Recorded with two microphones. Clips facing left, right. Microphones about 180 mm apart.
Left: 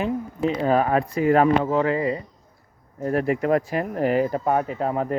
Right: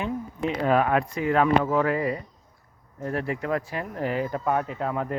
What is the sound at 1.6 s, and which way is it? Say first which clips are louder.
Speech: left 2 dB; 25° left (ahead or behind).